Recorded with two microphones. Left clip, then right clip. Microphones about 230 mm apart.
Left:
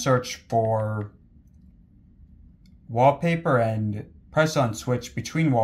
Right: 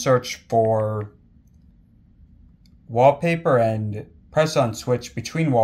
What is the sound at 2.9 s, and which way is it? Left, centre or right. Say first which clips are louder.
Speech: right 3 dB; centre.